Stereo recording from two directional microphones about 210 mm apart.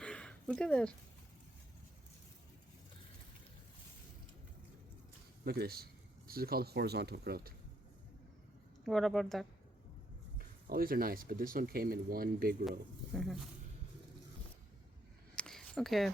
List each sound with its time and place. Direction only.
0.0 s a sound: 5° left (ahead or behind)
5.5 s speech: 45° right (ahead or behind)
8.8 s a woman's voice: centre (ahead or behind)
10.3 s speech: 45° right (ahead or behind)
13.1 s a woman's voice: centre (ahead or behind)
15.4 s a sound: 5° left (ahead or behind)